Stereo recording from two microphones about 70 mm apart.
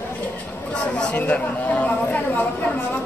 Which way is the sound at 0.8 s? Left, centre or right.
Centre.